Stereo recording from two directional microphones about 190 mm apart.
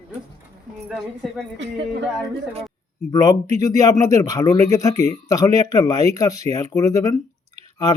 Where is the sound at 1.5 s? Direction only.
70° right (ahead or behind).